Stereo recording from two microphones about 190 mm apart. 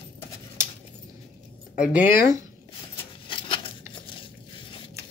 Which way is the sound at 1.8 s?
5° right (ahead or behind).